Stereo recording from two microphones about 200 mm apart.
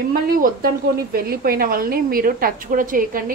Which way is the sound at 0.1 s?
45° right (ahead or behind).